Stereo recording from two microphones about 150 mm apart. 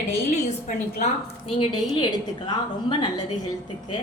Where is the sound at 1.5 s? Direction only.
35° left (ahead or behind).